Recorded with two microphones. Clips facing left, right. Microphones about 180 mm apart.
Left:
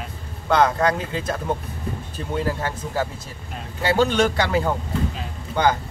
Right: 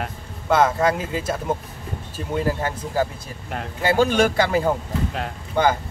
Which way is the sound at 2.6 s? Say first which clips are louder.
Right 2 dB; 10° right (ahead or behind).